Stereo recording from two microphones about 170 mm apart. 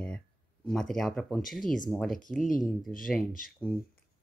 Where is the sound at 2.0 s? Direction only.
50° left (ahead or behind).